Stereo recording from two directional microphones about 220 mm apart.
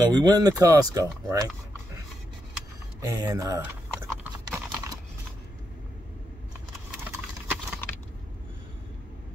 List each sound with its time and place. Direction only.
0.0 s speech: 20° right (ahead or behind)
3.0 s speech: 15° right (ahead or behind)
4.2 s clip-clop: 10° right (ahead or behind)